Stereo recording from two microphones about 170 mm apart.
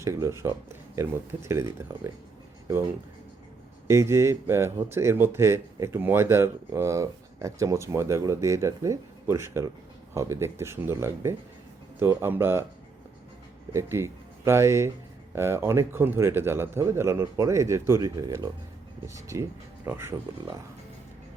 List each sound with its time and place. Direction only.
0.0 s speech: 15° right (ahead or behind)
3.8 s speech: 15° right (ahead or behind)
13.7 s speech: 15° right (ahead or behind)